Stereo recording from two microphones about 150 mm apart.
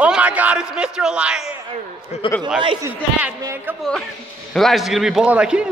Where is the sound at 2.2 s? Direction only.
35° left (ahead or behind).